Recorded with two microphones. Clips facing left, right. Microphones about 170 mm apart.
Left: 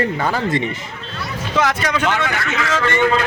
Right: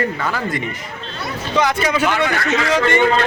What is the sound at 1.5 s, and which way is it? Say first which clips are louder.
Speech: right 1 dB; centre (ahead or behind).